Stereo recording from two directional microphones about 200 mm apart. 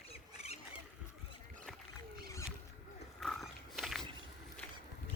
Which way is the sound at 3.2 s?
Centre (ahead or behind).